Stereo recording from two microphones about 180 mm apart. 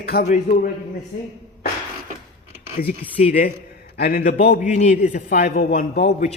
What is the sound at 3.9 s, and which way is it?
A man's voice, 55° left (ahead or behind).